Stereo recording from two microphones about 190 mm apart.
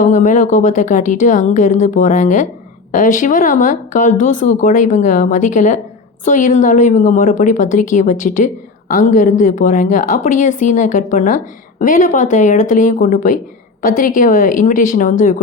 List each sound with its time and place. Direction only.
0.0 s a woman's voice: 40° left (ahead or behind)